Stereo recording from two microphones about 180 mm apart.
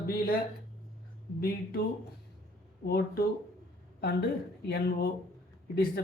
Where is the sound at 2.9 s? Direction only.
60° left (ahead or behind).